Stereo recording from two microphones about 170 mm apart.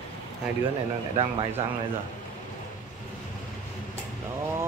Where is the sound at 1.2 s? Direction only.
30° right (ahead or behind).